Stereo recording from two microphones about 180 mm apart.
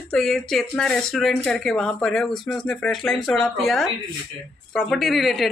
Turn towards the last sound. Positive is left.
turn(degrees=0)  # may be behind; listen again after turning